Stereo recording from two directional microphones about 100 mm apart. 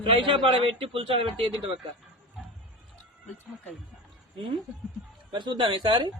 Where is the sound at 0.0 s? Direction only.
60° right (ahead or behind).